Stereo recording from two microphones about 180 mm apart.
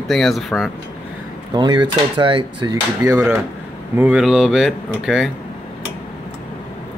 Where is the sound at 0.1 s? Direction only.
Centre (ahead or behind).